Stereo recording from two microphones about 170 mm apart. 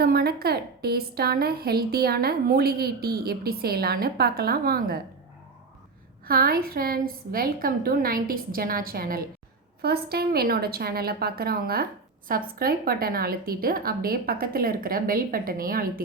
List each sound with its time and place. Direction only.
0.0 s a woman's voice: 65° right (ahead or behind)
6.2 s a woman's voice: 60° right (ahead or behind)